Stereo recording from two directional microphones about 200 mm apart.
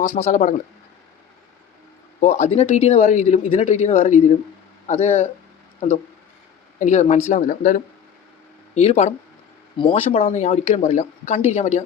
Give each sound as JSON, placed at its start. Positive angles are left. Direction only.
{"t": 0.1, "sound": "speech", "side_deg": 35}
{"t": 2.2, "sound": "speech", "side_deg": 35}
{"t": 6.7, "sound": "speech", "side_deg": 35}
{"t": 10.1, "sound": "speech", "side_deg": 35}